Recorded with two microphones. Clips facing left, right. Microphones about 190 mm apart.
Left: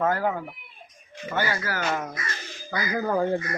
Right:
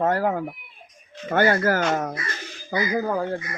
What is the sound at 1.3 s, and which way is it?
Speech, 55° right (ahead or behind).